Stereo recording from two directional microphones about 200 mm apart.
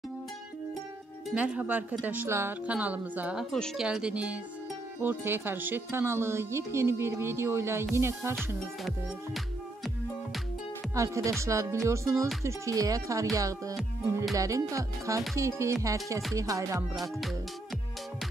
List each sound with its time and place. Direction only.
1.3 s speech: 5° right (ahead or behind)
3.5 s music: centre (ahead or behind)
5.0 s speech: 10° right (ahead or behind)
8.4 s music: centre (ahead or behind)
11.0 s speech: 15° right (ahead or behind)